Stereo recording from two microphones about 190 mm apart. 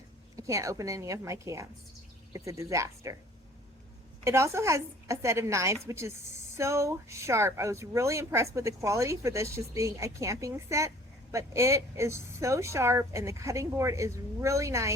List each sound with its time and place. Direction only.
0.3 s speech: 15° right (ahead or behind)
4.2 s speech: 15° right (ahead or behind)